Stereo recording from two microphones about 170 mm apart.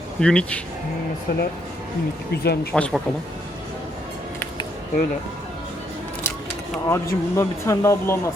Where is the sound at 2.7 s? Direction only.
5° left (ahead or behind).